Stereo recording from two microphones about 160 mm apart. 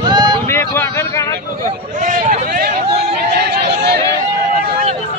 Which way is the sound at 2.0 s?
50° right (ahead or behind).